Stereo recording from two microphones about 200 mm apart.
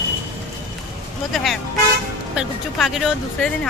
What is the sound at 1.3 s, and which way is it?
Speech, centre (ahead or behind).